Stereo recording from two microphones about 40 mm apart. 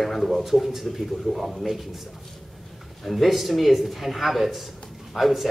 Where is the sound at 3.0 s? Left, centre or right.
Centre.